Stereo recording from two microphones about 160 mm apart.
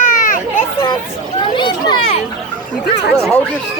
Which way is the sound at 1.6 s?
30° left (ahead or behind).